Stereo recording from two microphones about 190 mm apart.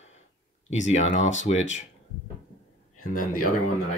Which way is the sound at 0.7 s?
40° left (ahead or behind).